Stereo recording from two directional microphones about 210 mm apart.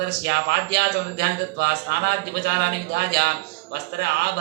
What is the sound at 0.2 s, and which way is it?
Speech, 50° right (ahead or behind).